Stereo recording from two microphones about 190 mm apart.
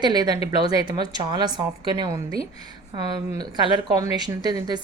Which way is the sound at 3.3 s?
20° right (ahead or behind).